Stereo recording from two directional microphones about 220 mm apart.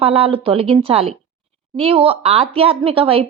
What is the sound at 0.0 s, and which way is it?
Speech, 25° right (ahead or behind).